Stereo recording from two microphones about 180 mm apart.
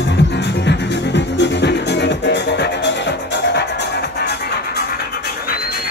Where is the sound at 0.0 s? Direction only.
75° left (ahead or behind).